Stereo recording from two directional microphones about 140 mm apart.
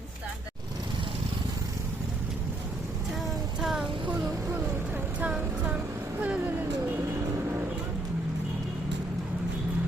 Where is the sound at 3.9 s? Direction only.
35° right (ahead or behind).